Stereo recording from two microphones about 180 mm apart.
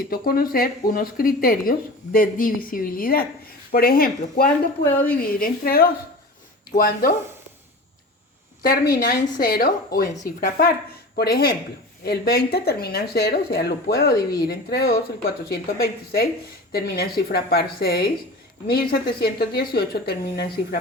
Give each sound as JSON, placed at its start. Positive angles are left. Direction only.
{"t": 0.0, "sound": "speech", "side_deg": 55}
{"t": 8.6, "sound": "speech", "side_deg": 55}